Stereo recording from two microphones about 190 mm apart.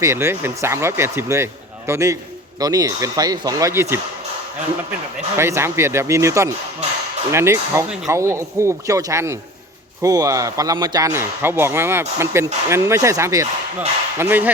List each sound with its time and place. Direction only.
0.0 s speech: 15° right (ahead or behind)
5.4 s speech: 15° right (ahead or behind)